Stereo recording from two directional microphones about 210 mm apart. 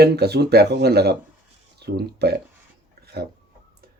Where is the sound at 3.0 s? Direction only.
50° right (ahead or behind).